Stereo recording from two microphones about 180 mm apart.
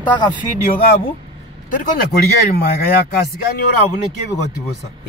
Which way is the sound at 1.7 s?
55° left (ahead or behind).